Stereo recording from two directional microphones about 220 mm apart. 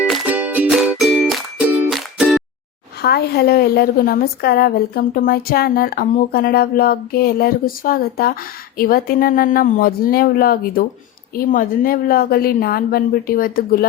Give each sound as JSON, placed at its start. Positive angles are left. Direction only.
{"t": 0.0, "sound": "music", "side_deg": -5}
{"t": 3.0, "sound": "a woman's voice", "side_deg": 45}